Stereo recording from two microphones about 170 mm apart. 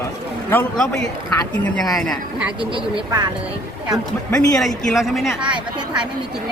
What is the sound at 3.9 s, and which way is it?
A woman's voice, centre (ahead or behind).